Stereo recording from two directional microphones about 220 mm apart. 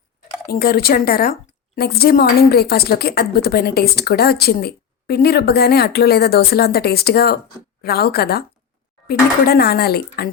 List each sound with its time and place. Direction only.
0.5 s a woman's voice: 45° left (ahead or behind)